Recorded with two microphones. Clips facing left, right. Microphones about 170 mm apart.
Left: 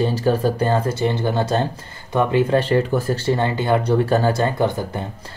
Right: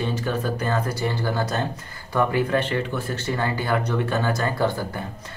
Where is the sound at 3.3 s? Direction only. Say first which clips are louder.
Left 5 dB; 25° left (ahead or behind).